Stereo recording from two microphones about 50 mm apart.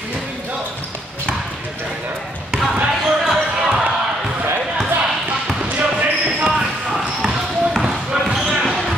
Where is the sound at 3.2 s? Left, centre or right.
Centre.